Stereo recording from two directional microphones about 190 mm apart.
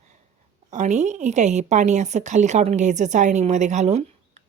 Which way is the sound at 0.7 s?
40° right (ahead or behind).